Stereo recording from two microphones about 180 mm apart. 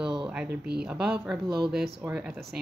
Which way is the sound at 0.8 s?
5° right (ahead or behind).